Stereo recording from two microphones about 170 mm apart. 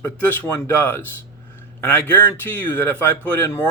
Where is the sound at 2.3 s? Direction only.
10° left (ahead or behind).